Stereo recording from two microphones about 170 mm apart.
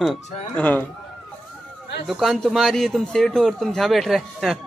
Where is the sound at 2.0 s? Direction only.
Centre (ahead or behind).